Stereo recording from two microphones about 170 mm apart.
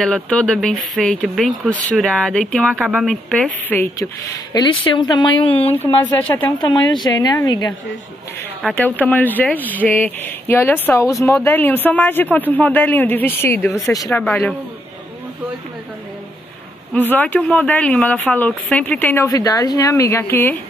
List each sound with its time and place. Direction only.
0.0 s a man's voice: 5° left (ahead or behind); by 5.5 s 25° left (ahead or behind)
5.7 s a man's voice: 10° left (ahead or behind)
6.6 s speech: 25° left (ahead or behind)
8.6 s a man's voice: 10° left (ahead or behind)
17.1 s a man's voice: 10° left (ahead or behind)